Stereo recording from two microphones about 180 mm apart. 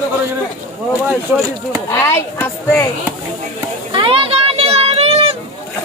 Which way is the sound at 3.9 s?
30° right (ahead or behind).